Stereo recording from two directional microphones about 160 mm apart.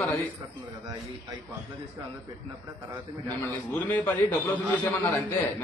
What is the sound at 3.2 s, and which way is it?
A man's voice, 10° left (ahead or behind).